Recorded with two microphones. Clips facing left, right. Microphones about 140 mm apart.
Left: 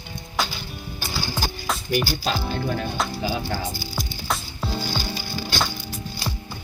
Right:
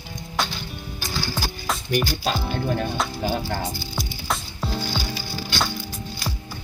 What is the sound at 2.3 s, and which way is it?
Speech, centre (ahead or behind).